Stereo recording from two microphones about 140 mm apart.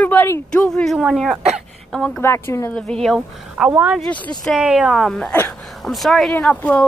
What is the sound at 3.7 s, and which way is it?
Speech, 15° right (ahead or behind).